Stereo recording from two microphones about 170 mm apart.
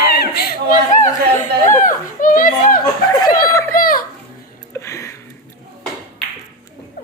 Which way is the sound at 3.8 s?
55° left (ahead or behind).